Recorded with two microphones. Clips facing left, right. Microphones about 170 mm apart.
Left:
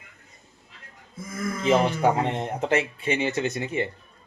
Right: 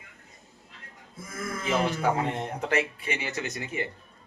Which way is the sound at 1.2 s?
Centre (ahead or behind).